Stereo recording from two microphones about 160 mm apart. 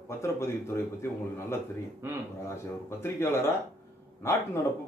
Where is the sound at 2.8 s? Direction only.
15° left (ahead or behind).